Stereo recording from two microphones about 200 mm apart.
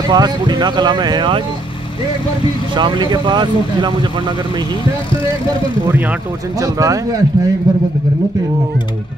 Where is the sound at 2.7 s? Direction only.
20° right (ahead or behind).